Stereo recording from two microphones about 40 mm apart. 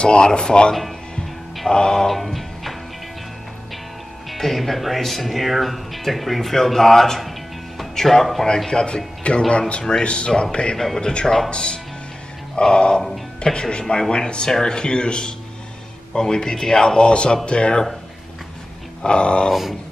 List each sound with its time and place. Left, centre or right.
0.0 s a man's voice: left
2.0 s music: centre
4.3 s speech: centre
7.2 s music: centre
7.9 s speech: centre
8.6 s a man's voice: left
19.0 s a man's voice: left